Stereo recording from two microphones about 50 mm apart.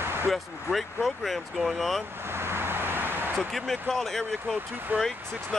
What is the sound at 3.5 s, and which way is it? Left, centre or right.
Speech, centre.